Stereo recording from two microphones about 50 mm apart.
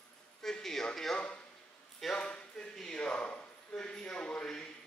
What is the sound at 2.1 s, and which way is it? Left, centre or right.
Speech, centre.